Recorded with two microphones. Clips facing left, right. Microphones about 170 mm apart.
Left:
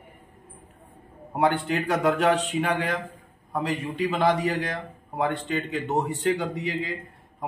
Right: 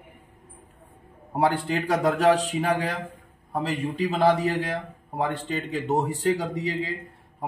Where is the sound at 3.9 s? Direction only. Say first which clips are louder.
Right 2 dB; 40° right (ahead or behind).